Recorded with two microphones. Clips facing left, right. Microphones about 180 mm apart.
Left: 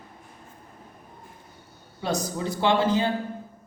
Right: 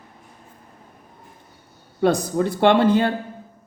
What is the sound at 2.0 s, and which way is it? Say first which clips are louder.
Speech: right 9 dB; 55° right (ahead or behind).